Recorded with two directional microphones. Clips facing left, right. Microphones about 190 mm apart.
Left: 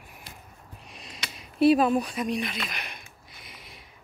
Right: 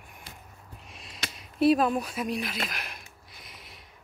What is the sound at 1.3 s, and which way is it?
Speech, centre (ahead or behind).